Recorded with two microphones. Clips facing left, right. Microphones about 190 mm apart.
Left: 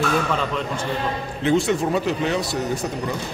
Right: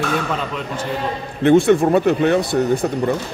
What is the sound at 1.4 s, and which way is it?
Speech, 55° right (ahead or behind).